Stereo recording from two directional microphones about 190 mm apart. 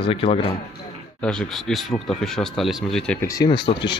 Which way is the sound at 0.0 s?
30° left (ahead or behind).